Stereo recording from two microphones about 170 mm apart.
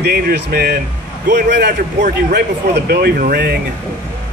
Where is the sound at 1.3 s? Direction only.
75° right (ahead or behind).